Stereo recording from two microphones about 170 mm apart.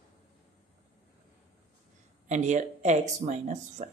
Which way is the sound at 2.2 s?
45° right (ahead or behind).